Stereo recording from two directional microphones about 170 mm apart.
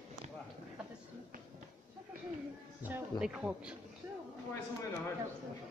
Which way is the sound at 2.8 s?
10° right (ahead or behind).